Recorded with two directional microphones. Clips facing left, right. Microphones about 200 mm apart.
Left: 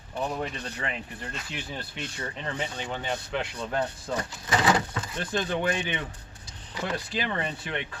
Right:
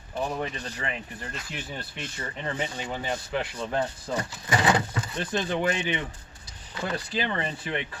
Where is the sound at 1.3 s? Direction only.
5° right (ahead or behind).